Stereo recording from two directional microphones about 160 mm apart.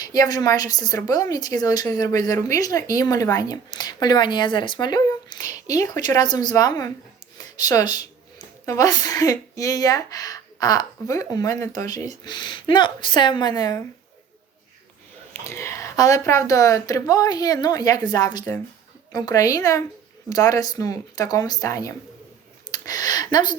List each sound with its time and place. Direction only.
0.0 s a woman's voice: 25° left (ahead or behind)
15.4 s a woman's voice: 15° left (ahead or behind)